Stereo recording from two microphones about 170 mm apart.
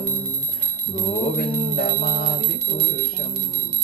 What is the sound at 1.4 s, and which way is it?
Music, 60° left (ahead or behind).